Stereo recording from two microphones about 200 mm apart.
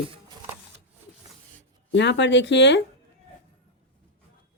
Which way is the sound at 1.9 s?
60° left (ahead or behind).